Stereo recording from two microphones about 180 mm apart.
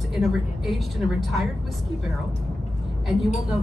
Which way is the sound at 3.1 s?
Centre (ahead or behind).